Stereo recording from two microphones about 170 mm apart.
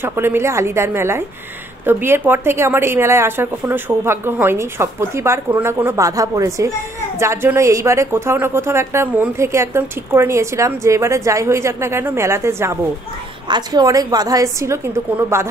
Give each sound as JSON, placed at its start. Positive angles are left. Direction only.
{"t": 0.0, "sound": "a woman's voice", "side_deg": -15}